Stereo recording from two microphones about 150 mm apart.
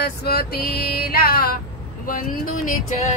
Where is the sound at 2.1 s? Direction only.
65° left (ahead or behind).